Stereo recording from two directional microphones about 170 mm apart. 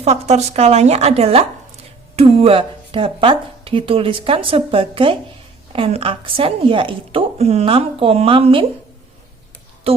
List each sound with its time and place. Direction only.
0.0 s speech: 40° right (ahead or behind)
9.9 s speech: 35° right (ahead or behind)